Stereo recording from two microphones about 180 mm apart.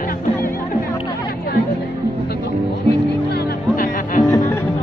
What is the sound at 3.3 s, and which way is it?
Music, 55° left (ahead or behind).